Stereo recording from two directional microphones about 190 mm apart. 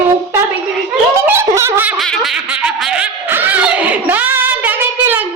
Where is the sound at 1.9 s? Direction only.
Centre (ahead or behind).